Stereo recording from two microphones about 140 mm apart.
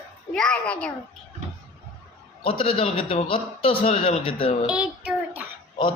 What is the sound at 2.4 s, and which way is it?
A man's voice, 40° left (ahead or behind).